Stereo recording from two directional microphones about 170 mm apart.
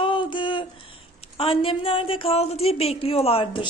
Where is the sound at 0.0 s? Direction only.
30° left (ahead or behind).